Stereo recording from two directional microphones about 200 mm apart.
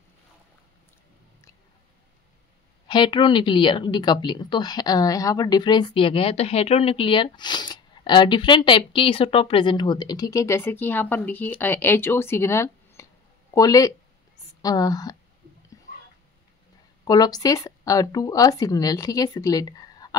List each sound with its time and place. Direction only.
2.9 s a woman's voice: 25° left (ahead or behind)
17.0 s speech: 20° left (ahead or behind)